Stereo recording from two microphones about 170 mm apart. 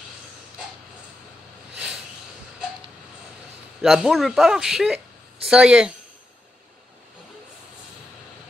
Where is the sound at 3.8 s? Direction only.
Centre (ahead or behind).